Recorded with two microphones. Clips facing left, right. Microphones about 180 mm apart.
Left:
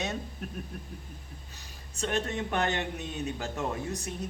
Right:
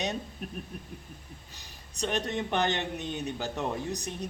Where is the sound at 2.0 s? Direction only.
15° right (ahead or behind).